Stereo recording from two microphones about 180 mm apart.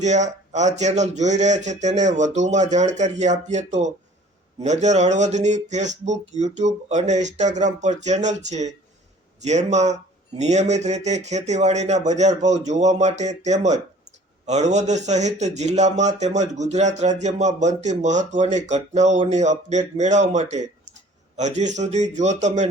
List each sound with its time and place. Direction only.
0.0 s a man's voice: 40° right (ahead or behind)